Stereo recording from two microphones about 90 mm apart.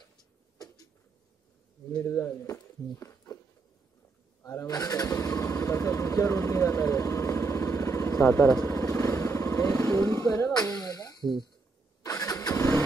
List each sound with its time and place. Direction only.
2.0 s speech: 35° left (ahead or behind)
4.4 s vehicle: 40° left (ahead or behind)
9.8 s a sound: 25° left (ahead or behind); by 11.4 s 45° left (ahead or behind)
12.0 s vehicle: 40° left (ahead or behind)